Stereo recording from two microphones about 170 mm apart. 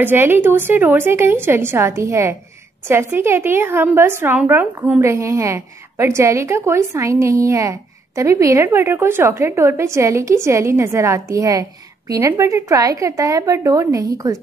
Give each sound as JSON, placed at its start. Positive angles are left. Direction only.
{"t": 0.0, "sound": "a woman's voice", "side_deg": -10}